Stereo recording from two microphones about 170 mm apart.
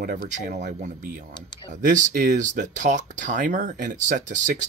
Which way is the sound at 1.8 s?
50° right (ahead or behind).